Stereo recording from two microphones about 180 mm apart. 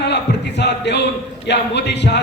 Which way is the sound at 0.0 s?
70° left (ahead or behind).